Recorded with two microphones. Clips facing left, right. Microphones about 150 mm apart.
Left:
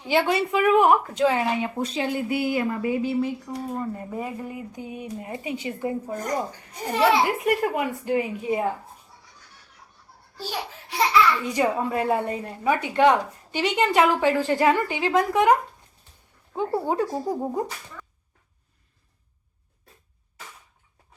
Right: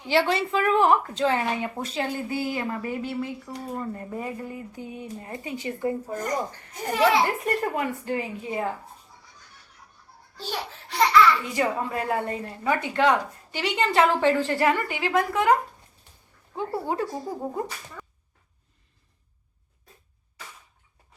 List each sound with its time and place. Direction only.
0.1 s speech: 15° left (ahead or behind)
7.3 s speech: 10° left (ahead or behind)
10.3 s a woman's voice: 10° left (ahead or behind)